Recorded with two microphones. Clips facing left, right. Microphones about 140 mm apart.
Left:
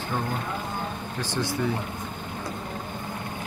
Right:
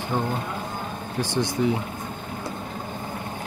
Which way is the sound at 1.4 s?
15° right (ahead or behind).